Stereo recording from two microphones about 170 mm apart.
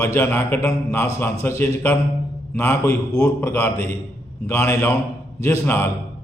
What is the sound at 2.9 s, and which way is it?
A man's voice, 5° left (ahead or behind).